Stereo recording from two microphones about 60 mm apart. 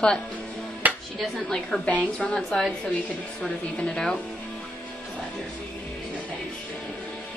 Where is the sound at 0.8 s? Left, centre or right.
Right.